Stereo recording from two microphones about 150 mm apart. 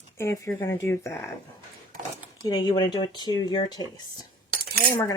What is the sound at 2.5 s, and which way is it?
Speech, 25° left (ahead or behind).